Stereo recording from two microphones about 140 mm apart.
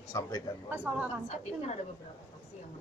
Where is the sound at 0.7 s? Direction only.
10° right (ahead or behind).